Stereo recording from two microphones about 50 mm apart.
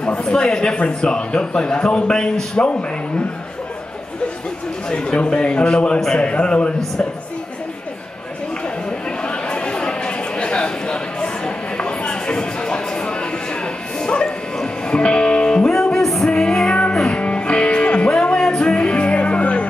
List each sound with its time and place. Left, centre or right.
0.3 s a man's voice: centre
4.8 s a man's voice: left
9.2 s a sound: left
13.9 s music: centre
15.7 s music: centre
16.3 s music: centre